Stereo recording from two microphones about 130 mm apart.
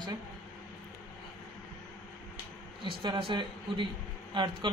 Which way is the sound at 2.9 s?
40° right (ahead or behind).